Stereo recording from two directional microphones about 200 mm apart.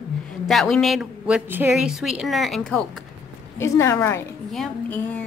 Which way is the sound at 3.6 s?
15° left (ahead or behind).